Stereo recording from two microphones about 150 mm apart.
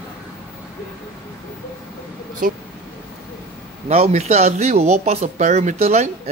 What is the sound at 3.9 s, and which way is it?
Speech, 45° right (ahead or behind).